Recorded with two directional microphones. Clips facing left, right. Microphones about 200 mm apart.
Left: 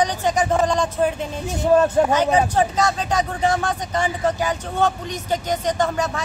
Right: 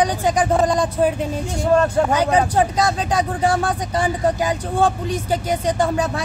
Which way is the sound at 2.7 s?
10° right (ahead or behind).